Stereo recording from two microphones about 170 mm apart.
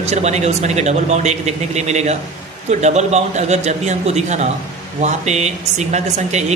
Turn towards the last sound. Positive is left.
turn(degrees=-40)  # may be behind; listen again after turning